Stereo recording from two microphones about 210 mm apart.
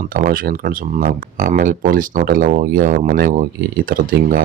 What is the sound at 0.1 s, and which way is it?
Speech, 45° right (ahead or behind).